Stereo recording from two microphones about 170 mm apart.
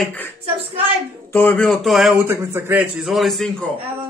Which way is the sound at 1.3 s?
10° left (ahead or behind).